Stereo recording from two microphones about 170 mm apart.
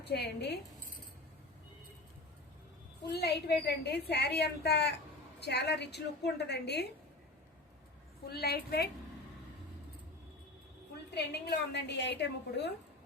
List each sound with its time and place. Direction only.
0.0 s a woman's voice: 75° left (ahead or behind)
3.1 s a woman's voice: 75° left (ahead or behind)
8.3 s a woman's voice: 65° left (ahead or behind)
10.9 s a woman's voice: 75° left (ahead or behind)